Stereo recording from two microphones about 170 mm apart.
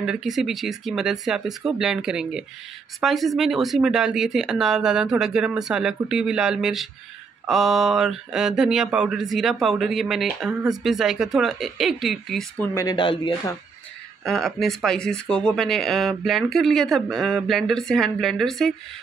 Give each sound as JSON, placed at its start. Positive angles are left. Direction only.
{"t": 0.0, "sound": "speech", "side_deg": -5}
{"t": 12.7, "sound": "speech", "side_deg": 25}
{"t": 14.2, "sound": "speech", "side_deg": 0}